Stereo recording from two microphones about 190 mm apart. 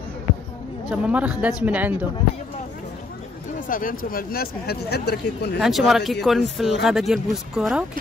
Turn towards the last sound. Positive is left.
turn(degrees=-5)  # may be behind; listen again after turning